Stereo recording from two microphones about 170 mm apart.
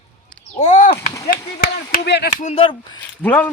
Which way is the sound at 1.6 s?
70° left (ahead or behind).